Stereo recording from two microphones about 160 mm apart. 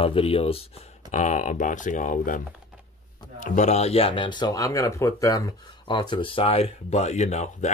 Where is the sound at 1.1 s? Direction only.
50° left (ahead or behind).